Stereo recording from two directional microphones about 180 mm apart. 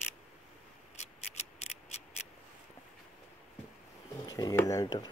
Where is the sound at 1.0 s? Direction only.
35° left (ahead or behind).